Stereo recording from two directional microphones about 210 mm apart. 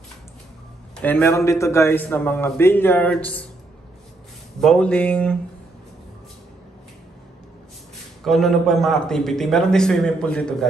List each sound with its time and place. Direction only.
0.9 s a man's voice: 10° left (ahead or behind)
4.6 s a man's voice: 5° left (ahead or behind)
8.2 s a man's voice: centre (ahead or behind)